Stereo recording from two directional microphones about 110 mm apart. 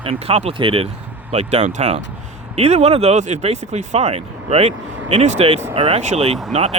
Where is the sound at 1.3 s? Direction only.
70° right (ahead or behind).